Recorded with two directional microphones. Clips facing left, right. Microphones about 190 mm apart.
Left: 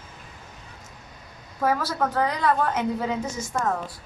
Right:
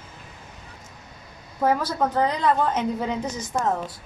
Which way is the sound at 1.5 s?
15° right (ahead or behind).